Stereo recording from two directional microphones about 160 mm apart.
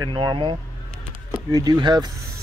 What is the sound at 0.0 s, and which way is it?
Speech, 25° right (ahead or behind).